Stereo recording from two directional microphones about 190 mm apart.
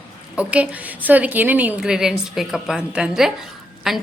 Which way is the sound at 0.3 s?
5° right (ahead or behind).